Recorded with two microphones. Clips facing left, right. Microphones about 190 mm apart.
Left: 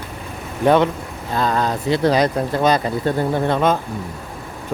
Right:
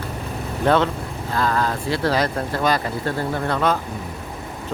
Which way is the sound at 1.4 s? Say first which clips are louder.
Left 2 dB; 20° left (ahead or behind).